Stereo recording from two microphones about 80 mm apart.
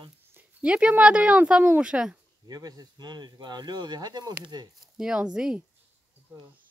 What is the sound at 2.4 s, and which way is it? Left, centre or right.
Speech, right.